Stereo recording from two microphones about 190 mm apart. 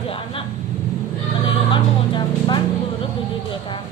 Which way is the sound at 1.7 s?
25° left (ahead or behind).